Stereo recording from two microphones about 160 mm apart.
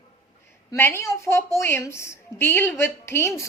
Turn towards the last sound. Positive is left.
turn(degrees=15)  # may be behind; listen again after turning